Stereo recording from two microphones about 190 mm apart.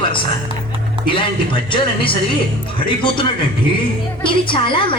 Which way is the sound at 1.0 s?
25° left (ahead or behind).